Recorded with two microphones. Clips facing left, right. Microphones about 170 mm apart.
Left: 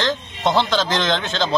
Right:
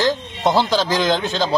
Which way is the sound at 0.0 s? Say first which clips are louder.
Right 3 dB; 15° right (ahead or behind).